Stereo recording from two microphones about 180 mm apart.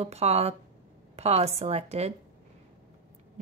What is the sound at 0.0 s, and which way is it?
Speech, 35° right (ahead or behind).